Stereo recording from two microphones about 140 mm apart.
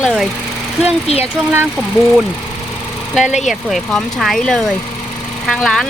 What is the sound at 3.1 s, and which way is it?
Speech, 5° right (ahead or behind).